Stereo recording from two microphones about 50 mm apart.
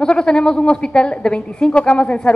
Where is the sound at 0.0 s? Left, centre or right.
Centre.